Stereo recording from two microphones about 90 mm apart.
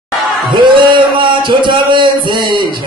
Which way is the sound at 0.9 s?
65° right (ahead or behind).